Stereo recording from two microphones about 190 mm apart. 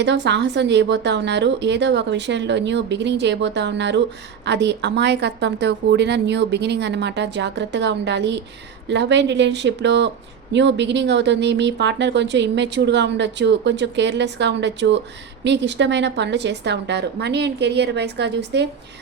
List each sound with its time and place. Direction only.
0.0 s speech: 65° right (ahead or behind)